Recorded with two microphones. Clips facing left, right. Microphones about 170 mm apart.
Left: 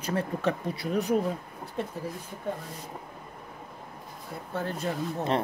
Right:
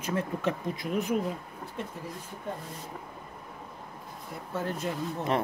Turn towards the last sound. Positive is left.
turn(degrees=35)  # may be behind; listen again after turning